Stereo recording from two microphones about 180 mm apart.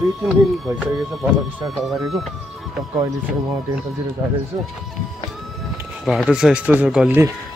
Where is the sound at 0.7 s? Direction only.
Centre (ahead or behind).